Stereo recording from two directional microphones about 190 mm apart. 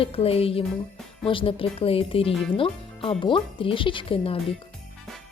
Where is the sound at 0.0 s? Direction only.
30° left (ahead or behind).